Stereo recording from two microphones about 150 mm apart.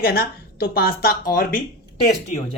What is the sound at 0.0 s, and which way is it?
A woman's voice, 90° left.